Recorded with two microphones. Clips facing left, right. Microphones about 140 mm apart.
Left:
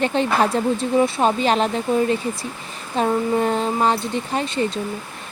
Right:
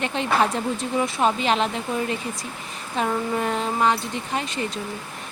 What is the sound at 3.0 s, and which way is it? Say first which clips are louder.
Speech: left 5 dB; 35° left (ahead or behind).